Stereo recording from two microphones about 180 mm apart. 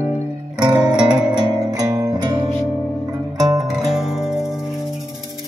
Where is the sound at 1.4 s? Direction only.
20° right (ahead or behind).